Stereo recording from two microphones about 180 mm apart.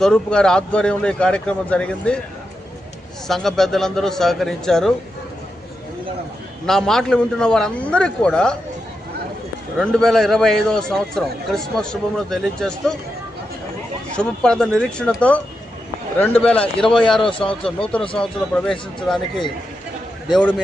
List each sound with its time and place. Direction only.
0.0 s a man's voice: 5° left (ahead or behind)
3.2 s a man's voice: centre (ahead or behind)
6.7 s a man's voice: centre (ahead or behind)
9.7 s a man's voice: centre (ahead or behind)
14.2 s a man's voice: 5° left (ahead or behind)
16.4 s a man's voice: 5° left (ahead or behind)
17.5 s speech: 30° left (ahead or behind)
18.2 s a man's voice: 5° left (ahead or behind)
20.3 s a man's voice: 10° left (ahead or behind)